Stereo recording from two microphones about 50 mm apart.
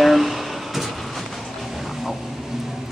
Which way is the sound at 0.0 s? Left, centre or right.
Centre.